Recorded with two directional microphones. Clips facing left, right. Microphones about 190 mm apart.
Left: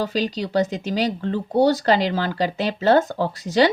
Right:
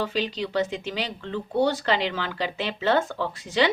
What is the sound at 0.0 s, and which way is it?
Speech, 40° left (ahead or behind).